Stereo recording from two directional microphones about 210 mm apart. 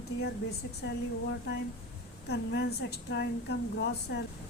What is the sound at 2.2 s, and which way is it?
A woman's voice, 50° left (ahead or behind).